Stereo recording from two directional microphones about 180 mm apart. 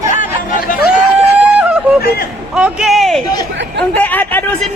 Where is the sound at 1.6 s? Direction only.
5° right (ahead or behind).